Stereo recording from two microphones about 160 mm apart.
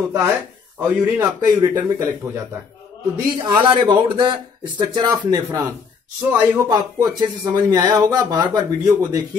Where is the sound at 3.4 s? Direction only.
30° right (ahead or behind).